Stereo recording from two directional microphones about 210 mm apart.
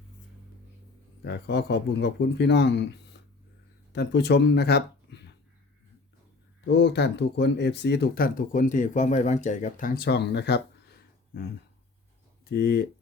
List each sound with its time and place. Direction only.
1.2 s speech: 55° left (ahead or behind)
6.7 s speech: 55° left (ahead or behind)